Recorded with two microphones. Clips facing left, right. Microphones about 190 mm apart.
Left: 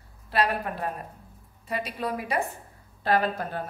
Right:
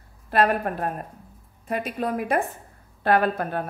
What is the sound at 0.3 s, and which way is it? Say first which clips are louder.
A woman's voice: right 5 dB; 50° right (ahead or behind).